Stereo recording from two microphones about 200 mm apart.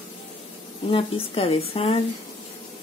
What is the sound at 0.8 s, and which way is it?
Speech, 25° left (ahead or behind).